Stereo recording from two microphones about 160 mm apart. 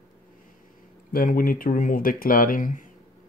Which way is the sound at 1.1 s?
60° left (ahead or behind).